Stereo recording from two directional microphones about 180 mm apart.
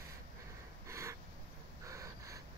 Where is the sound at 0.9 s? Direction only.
15° right (ahead or behind).